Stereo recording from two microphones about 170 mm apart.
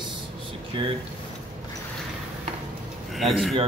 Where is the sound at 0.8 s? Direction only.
30° right (ahead or behind).